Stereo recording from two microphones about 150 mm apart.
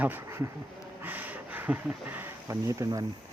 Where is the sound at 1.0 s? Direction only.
10° right (ahead or behind).